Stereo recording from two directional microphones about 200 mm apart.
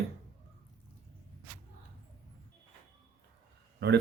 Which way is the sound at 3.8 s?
55° right (ahead or behind).